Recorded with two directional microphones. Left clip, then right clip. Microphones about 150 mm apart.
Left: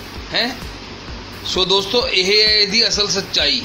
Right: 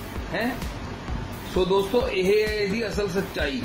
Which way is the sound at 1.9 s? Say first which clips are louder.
Left 6 dB; 15° left (ahead or behind).